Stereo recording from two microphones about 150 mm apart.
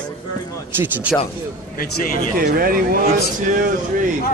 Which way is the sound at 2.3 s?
75° right (ahead or behind).